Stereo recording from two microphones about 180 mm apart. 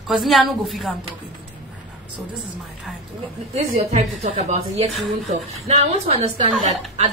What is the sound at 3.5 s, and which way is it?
A woman's voice, 35° right (ahead or behind).